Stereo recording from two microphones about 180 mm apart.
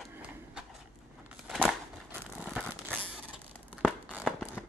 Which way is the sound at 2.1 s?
10° right (ahead or behind).